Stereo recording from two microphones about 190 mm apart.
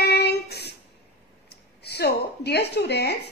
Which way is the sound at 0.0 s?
60° left (ahead or behind).